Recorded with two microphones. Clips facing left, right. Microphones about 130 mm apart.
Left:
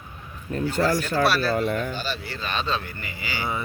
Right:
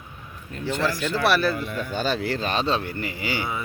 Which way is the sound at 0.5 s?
40° left (ahead or behind).